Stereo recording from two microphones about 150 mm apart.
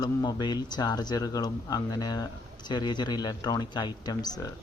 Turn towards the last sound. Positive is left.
turn(degrees=25)  # may be behind; listen again after turning